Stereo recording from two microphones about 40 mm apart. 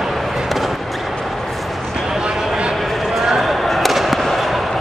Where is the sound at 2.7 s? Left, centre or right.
Centre.